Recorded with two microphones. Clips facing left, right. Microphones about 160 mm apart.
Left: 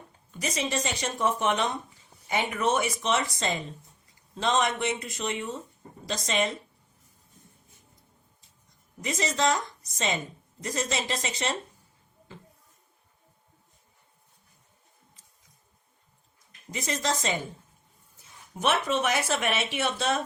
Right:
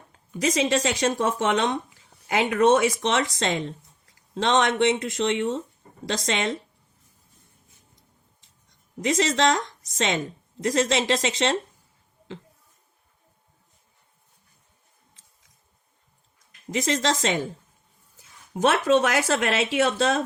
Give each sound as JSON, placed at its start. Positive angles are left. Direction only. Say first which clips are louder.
{"t": 0.3, "sound": "speech", "louder": "right 8 dB", "side_deg": -90}
{"t": 9.0, "sound": "speech", "louder": "right 6 dB", "side_deg": -90}
{"t": 16.7, "sound": "speech", "louder": "right 6 dB", "side_deg": -90}
{"t": 18.5, "sound": "speech", "louder": "right 7 dB", "side_deg": -90}